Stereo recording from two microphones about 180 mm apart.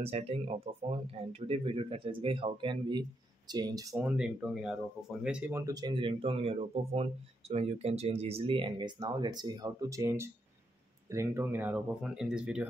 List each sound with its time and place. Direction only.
0.0 s speech: 35° right (ahead or behind)
3.9 s speech: 5° right (ahead or behind)
5.6 s speech: 20° right (ahead or behind); by 12.6 s 5° right (ahead or behind)